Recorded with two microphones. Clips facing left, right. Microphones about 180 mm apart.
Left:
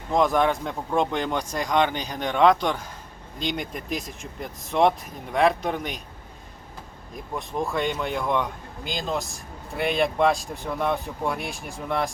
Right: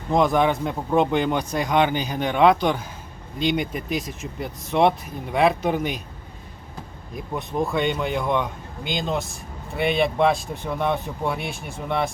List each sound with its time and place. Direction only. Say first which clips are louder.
0.1 s speech: right 2 dB; centre (ahead or behind)
7.2 s speech: right 3 dB; centre (ahead or behind)